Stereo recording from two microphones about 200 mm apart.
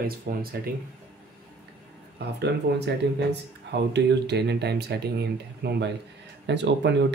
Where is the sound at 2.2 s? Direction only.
55° right (ahead or behind).